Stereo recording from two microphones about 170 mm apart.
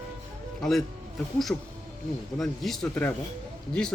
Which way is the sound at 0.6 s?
Centre (ahead or behind).